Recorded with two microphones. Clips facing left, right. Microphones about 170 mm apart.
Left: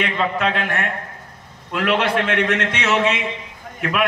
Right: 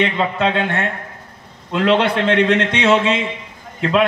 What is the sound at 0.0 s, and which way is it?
A man's voice, 25° right (ahead or behind).